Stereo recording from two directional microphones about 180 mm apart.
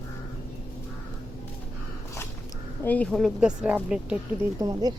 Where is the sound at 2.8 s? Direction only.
10° left (ahead or behind); by 4.2 s 5° right (ahead or behind).